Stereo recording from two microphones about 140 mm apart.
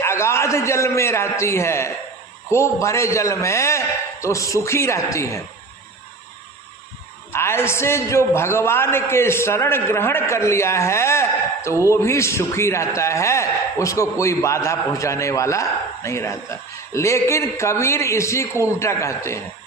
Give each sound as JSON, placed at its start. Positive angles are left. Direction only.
{"t": 0.0, "sound": "a man's voice", "side_deg": 20}
{"t": 7.3, "sound": "a man's voice", "side_deg": 15}